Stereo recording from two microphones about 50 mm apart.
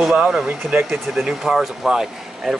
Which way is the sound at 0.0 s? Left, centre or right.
Centre.